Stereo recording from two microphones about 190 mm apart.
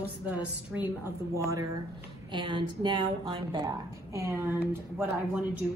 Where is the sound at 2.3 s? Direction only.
25° right (ahead or behind).